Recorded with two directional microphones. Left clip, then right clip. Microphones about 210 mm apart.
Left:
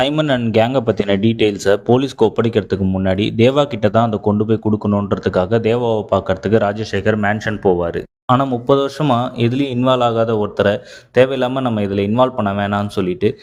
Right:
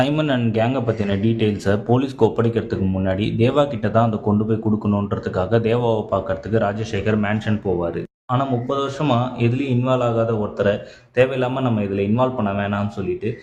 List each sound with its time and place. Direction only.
0.1 s speech: 25° left (ahead or behind)